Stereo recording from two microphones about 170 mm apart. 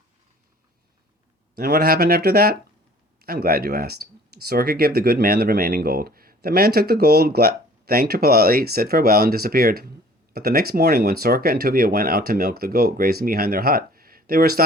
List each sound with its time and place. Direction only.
1.5 s speech: 65° right (ahead or behind)